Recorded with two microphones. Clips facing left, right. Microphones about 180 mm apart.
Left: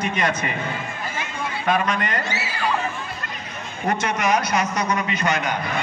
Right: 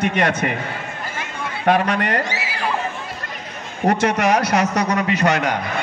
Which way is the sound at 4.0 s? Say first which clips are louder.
Right 2 dB; 75° right (ahead or behind).